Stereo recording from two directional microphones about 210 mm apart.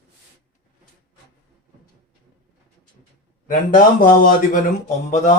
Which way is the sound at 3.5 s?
40° left (ahead or behind).